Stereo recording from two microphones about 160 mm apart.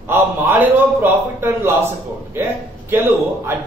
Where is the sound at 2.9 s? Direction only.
15° right (ahead or behind).